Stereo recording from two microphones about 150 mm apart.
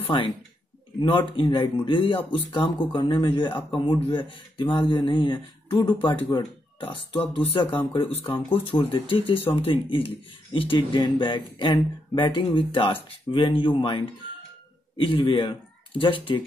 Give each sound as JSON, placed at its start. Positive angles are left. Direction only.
{"t": 0.0, "sound": "speech", "side_deg": 35}